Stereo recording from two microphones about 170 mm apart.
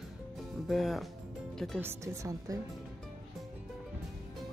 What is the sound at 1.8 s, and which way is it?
Speech, 15° right (ahead or behind).